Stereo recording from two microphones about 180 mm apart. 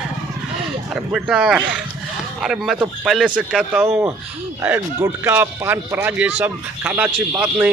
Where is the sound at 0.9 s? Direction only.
5° right (ahead or behind).